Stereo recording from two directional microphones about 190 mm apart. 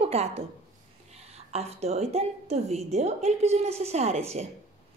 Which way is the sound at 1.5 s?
35° right (ahead or behind).